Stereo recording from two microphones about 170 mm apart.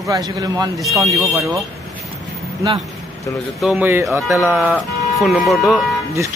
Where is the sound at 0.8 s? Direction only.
Centre (ahead or behind).